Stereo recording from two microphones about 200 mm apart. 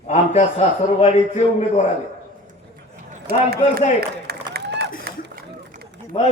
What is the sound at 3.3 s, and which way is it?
Speech, 50° right (ahead or behind).